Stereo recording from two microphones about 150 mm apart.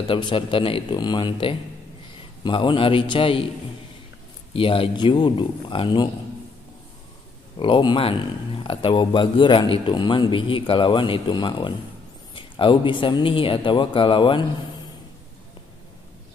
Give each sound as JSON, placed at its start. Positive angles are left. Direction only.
{"t": 0.0, "sound": "a man's voice", "side_deg": 30}
{"t": 4.6, "sound": "speech", "side_deg": 35}
{"t": 7.5, "sound": "speech", "side_deg": 35}